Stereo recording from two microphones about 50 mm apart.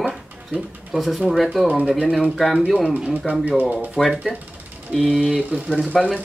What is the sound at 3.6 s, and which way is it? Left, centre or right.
Speech, right.